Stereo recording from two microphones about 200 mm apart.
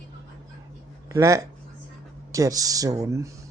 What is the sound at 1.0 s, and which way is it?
Speech, 15° right (ahead or behind).